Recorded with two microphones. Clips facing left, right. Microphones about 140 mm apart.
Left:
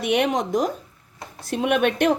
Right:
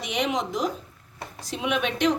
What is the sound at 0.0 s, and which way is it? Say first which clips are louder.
Speech: left 7 dB; 60° left (ahead or behind).